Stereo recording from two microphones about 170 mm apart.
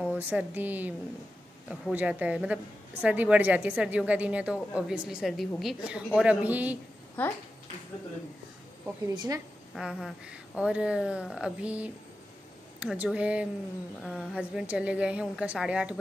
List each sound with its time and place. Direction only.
0.1 s a woman's voice: 10° right (ahead or behind)
7.2 s speech: 10° left (ahead or behind)
9.0 s a woman's voice: 25° right (ahead or behind)
9.8 s a woman's voice: 5° right (ahead or behind)